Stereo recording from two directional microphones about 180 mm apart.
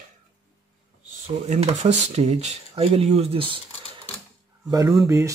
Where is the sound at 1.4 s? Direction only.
35° right (ahead or behind).